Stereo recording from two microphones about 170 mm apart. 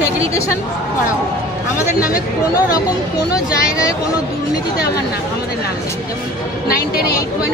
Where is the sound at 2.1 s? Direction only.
20° left (ahead or behind).